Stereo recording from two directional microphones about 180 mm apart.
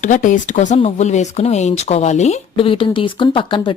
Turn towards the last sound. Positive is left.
turn(degrees=30)  # may be behind; listen again after turning